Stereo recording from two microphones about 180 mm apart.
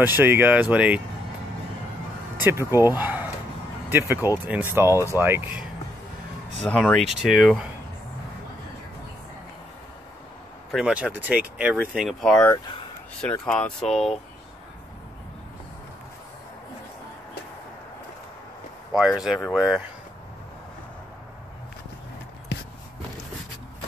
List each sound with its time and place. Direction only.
0.0 s speech: 10° right (ahead or behind)
2.4 s speech: 15° right (ahead or behind)
6.6 s speech: 5° left (ahead or behind)
10.7 s speech: 5° right (ahead or behind)
18.9 s speech: 5° right (ahead or behind)